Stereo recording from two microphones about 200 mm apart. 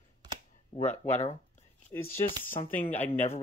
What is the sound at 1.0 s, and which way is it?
Speech, 35° left (ahead or behind).